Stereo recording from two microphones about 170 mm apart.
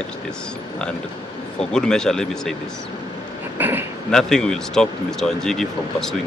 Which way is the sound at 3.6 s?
10° right (ahead or behind).